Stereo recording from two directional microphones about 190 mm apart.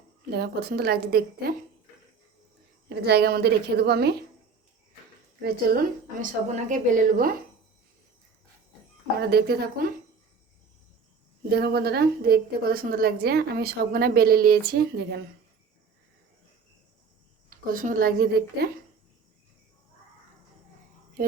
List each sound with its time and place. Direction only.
0.3 s a woman's voice: 55° right (ahead or behind)
2.9 s a woman's voice: 60° right (ahead or behind)
5.4 s a woman's voice: 55° right (ahead or behind)
6.5 s a woman's voice: 40° right (ahead or behind)
9.2 s a woman's voice: 55° right (ahead or behind)
11.4 s a woman's voice: 55° right (ahead or behind)
17.5 s a woman's voice: 45° right (ahead or behind)